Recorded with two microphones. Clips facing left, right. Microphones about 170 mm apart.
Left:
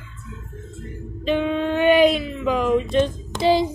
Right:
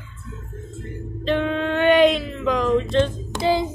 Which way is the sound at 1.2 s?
10° left (ahead or behind).